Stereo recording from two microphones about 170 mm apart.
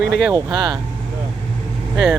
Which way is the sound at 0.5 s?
25° right (ahead or behind).